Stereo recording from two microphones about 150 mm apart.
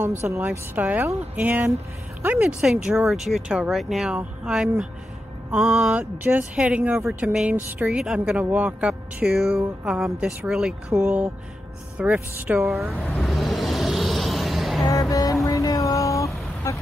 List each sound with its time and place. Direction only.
0.0 s speech: 15° right (ahead or behind)
10.9 s speech: 15° right (ahead or behind)
13.2 s music: centre (ahead or behind)
14.9 s vehicle: 25° left (ahead or behind)